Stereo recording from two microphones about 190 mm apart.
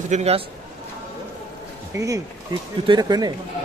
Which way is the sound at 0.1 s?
35° right (ahead or behind).